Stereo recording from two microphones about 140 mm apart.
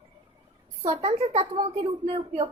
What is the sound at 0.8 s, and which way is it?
A child's voice, 45° right (ahead or behind).